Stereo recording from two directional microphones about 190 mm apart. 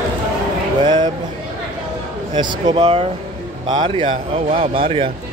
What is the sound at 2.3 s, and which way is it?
A man's voice, 25° right (ahead or behind).